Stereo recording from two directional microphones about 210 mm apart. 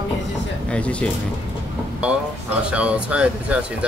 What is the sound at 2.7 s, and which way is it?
Speech, 5° right (ahead or behind).